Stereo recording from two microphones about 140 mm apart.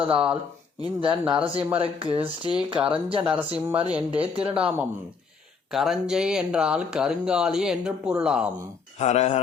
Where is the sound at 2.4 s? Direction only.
10° right (ahead or behind).